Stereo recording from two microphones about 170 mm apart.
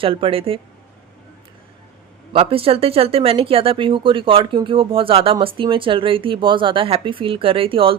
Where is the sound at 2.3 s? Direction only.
30° right (ahead or behind).